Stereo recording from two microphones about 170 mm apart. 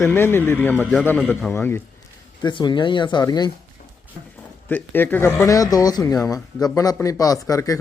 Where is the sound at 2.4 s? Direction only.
25° left (ahead or behind).